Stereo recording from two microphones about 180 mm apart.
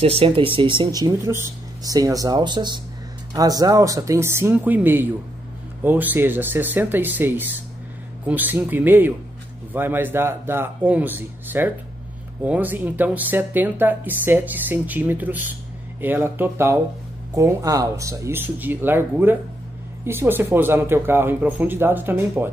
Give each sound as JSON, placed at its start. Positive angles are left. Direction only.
{"t": 0.0, "sound": "speech", "side_deg": -35}